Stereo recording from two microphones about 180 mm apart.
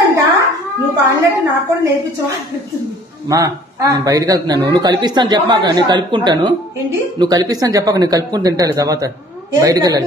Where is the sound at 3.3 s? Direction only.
20° right (ahead or behind).